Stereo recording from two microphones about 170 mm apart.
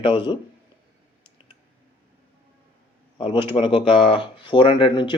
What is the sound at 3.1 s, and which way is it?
Speech, 30° left (ahead or behind).